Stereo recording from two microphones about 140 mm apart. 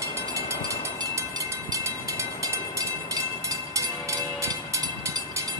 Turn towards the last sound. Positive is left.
turn(degrees=-20)  # may be behind; listen again after turning